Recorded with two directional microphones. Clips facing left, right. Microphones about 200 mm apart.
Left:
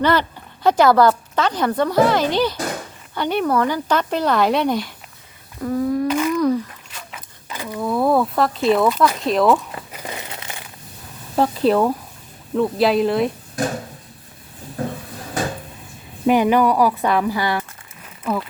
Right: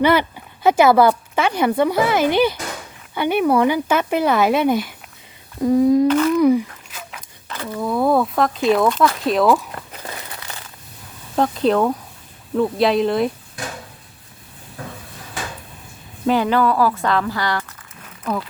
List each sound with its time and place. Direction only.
0.0 s speech: 10° right (ahead or behind)
5.5 s speech: 15° right (ahead or behind)
6.1 s humming: 10° left (ahead or behind)
6.3 s a sound: 10° right (ahead or behind)
7.4 s a sound: 10° left (ahead or behind)
7.8 s speech: centre (ahead or behind)
9.2 s crumpling: centre (ahead or behind); by 10.6 s 20° left (ahead or behind)
11.3 s speech: 5° left (ahead or behind)
16.2 s speech: 15° left (ahead or behind)
18.2 s a sound: 5° left (ahead or behind)